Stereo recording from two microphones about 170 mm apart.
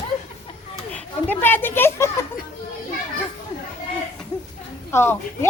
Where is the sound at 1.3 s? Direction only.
10° left (ahead or behind).